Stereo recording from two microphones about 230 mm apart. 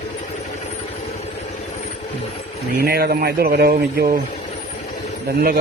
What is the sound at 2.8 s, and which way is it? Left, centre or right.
Speech, right.